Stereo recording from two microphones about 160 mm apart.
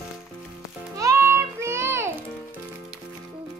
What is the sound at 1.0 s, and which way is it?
Child singing, 15° right (ahead or behind).